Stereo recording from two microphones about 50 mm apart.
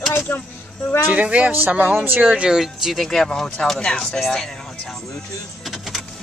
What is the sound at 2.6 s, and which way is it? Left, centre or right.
Speech, centre.